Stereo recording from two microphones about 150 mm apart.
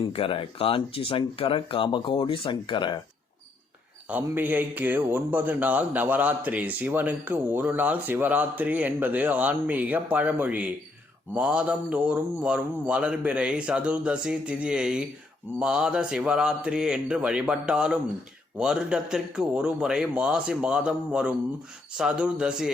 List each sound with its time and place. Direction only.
0.1 s speech: 40° left (ahead or behind)
4.1 s a man's voice: 10° right (ahead or behind)